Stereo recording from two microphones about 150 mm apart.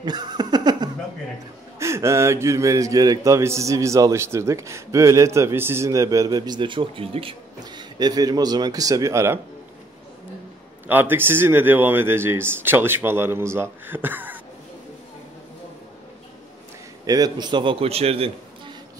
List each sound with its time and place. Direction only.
0.0 s chuckle: 30° right (ahead or behind)
1.8 s a man's voice: 20° right (ahead or behind)
10.9 s speech: 15° right (ahead or behind)
17.0 s a man's voice: 25° right (ahead or behind); by 18.3 s 40° right (ahead or behind)